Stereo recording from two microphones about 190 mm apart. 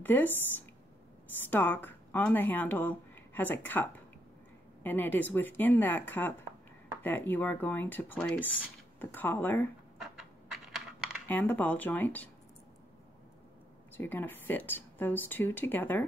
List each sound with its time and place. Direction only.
0.0 s speech: 10° left (ahead or behind)
1.5 s speech: 10° left (ahead or behind)
10.5 s computer keyboard: centre (ahead or behind)
11.2 s speech: 10° left (ahead or behind)
13.9 s speech: 10° left (ahead or behind)